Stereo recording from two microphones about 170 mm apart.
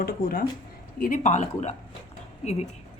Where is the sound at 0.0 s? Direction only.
60° left (ahead or behind).